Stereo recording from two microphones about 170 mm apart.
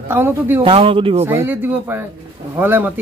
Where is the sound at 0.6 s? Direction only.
30° right (ahead or behind).